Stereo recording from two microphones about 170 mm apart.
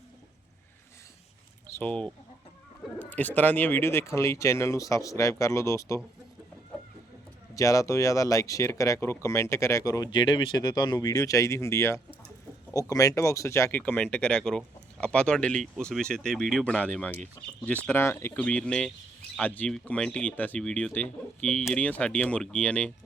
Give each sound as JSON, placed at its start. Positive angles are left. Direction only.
{"t": 1.8, "sound": "speech", "side_deg": 5}
{"t": 6.7, "sound": "chicken", "side_deg": 5}
{"t": 7.5, "sound": "speech", "side_deg": 20}